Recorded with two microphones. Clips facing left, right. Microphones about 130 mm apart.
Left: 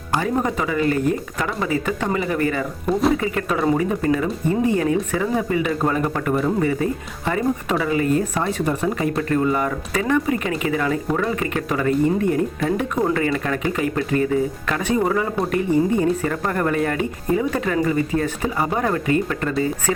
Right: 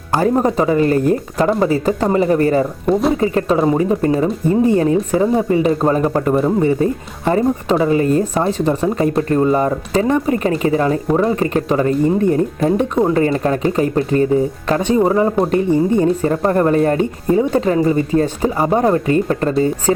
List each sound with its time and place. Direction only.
0.2 s speech: 35° right (ahead or behind)